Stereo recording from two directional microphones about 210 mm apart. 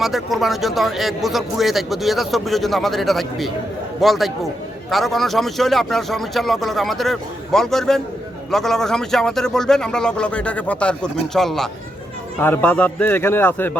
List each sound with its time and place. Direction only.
0.0 s a man's voice: centre (ahead or behind)